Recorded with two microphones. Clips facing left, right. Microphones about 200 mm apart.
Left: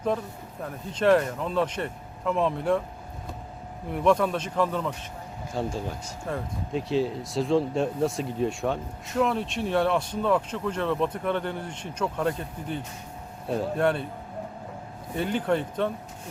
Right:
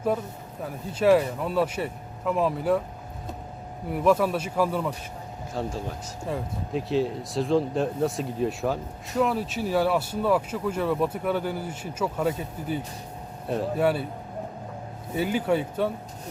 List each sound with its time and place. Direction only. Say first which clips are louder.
0.6 s speech: right 1 dB; 5° right (ahead or behind)
3.9 s speech: right 1 dB; 5° right (ahead or behind)
15.1 s speech: right 1 dB; 5° right (ahead or behind)